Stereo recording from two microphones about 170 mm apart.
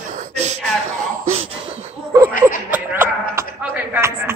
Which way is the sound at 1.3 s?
35° right (ahead or behind).